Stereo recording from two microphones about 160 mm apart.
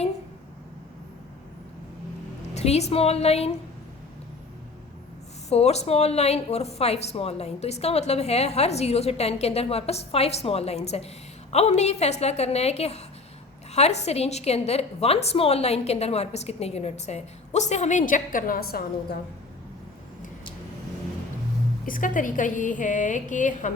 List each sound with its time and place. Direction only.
2.6 s a woman's voice: 45° left (ahead or behind)
5.5 s a woman's voice: 40° left (ahead or behind); by 19.2 s 75° left (ahead or behind)
21.8 s a woman's voice: 60° left (ahead or behind)